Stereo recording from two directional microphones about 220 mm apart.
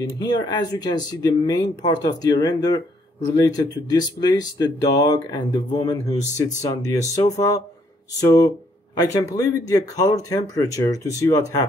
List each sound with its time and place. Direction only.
0.2 s speech: 20° left (ahead or behind)